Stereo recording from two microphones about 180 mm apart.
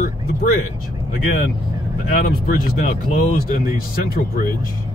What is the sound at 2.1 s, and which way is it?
Speech, 55° left (ahead or behind).